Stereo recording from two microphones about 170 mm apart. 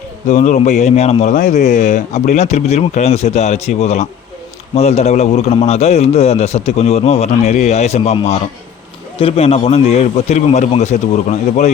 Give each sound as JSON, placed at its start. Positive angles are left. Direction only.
{"t": 0.3, "sound": "a man's voice", "side_deg": 45}